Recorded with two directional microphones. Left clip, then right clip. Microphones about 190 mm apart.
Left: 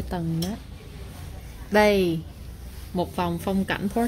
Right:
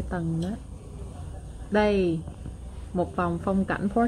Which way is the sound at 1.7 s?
15° left (ahead or behind).